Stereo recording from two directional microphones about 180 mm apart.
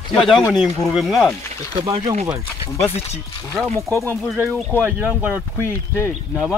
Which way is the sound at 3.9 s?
15° right (ahead or behind).